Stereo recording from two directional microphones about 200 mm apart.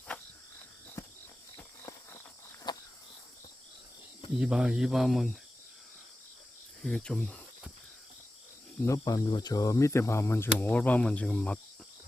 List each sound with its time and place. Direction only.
0.1 s cricket: 5° left (ahead or behind)
1.8 s a sound: 10° left (ahead or behind)
2.7 s cricket: 20° left (ahead or behind)
4.4 s speech: 5° right (ahead or behind)
6.8 s speech: 5° left (ahead or behind)
8.8 s speech: 15° left (ahead or behind)